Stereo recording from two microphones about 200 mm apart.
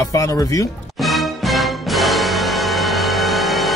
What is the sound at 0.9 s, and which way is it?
Music, centre (ahead or behind).